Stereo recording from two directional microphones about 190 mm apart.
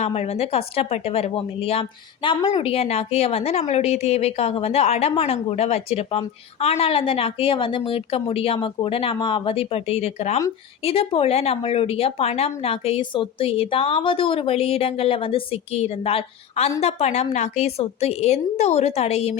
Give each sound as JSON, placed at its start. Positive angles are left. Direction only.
{"t": 0.0, "sound": "a woman's voice", "side_deg": 35}